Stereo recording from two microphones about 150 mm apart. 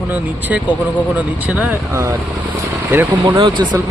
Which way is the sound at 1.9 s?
20° right (ahead or behind).